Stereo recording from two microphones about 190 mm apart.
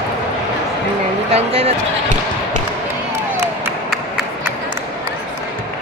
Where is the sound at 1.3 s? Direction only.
30° right (ahead or behind).